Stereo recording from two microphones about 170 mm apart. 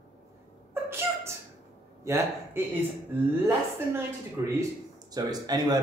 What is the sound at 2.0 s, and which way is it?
Speech, 15° right (ahead or behind).